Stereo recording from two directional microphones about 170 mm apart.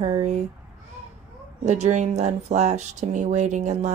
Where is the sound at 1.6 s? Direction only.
45° right (ahead or behind).